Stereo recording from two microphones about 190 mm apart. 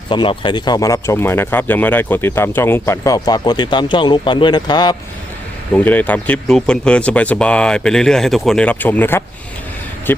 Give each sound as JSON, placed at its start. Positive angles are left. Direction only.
{"t": 0.1, "sound": "speech", "side_deg": 25}
{"t": 5.7, "sound": "speech", "side_deg": 10}